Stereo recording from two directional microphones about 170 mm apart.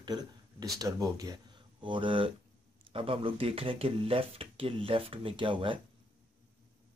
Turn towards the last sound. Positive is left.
turn(degrees=-30)  # may be behind; listen again after turning